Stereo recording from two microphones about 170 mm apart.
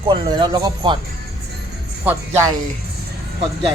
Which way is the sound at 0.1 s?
25° right (ahead or behind).